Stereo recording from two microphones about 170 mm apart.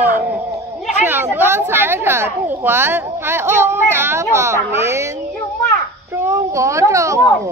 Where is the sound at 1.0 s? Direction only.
10° right (ahead or behind).